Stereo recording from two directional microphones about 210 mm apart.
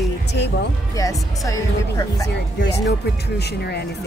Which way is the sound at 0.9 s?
15° left (ahead or behind).